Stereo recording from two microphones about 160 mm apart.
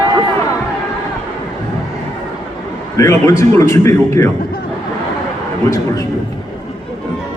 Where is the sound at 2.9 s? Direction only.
20° left (ahead or behind).